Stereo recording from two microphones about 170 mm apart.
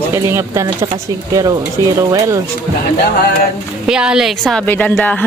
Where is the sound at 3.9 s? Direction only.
5° right (ahead or behind).